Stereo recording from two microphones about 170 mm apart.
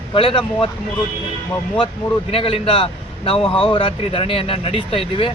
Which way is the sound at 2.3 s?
35° left (ahead or behind).